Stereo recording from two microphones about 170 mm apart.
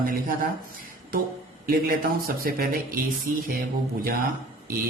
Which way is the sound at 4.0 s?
60° right (ahead or behind).